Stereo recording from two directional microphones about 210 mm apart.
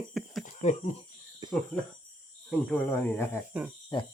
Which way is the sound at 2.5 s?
10° left (ahead or behind).